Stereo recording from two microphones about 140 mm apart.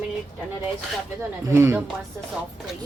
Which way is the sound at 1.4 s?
20° right (ahead or behind).